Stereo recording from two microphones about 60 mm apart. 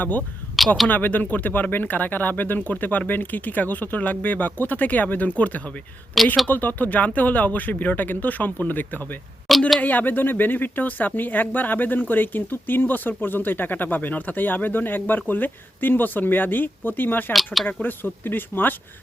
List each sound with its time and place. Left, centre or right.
0.0 s speech: left
6.2 s speech: centre
6.5 s speech: left
9.5 s speech: centre
9.8 s speech: left
17.3 s speech: centre
17.8 s speech: left